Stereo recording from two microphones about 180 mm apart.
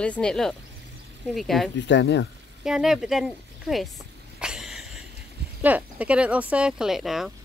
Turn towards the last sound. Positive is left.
turn(degrees=0)  # may be behind; listen again after turning